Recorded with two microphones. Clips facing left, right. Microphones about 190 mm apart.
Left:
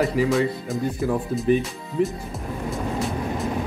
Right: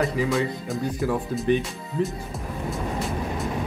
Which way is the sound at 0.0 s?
Centre (ahead or behind).